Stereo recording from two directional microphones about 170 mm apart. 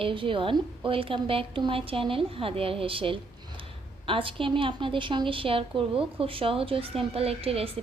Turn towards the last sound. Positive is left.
turn(degrees=-35)  # may be behind; listen again after turning